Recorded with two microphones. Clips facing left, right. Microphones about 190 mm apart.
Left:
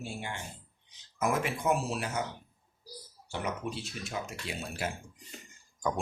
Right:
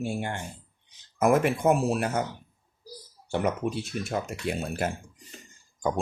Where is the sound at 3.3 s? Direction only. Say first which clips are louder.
Right 8 dB; 50° right (ahead or behind).